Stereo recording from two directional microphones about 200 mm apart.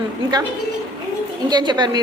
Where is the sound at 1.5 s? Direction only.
20° right (ahead or behind).